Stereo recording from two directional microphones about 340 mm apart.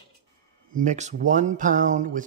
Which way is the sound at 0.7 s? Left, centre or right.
Right.